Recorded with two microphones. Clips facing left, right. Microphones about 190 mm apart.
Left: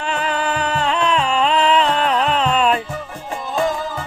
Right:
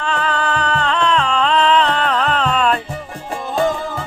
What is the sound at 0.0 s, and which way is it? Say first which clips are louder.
Music: right 1 dB; 15° left (ahead or behind).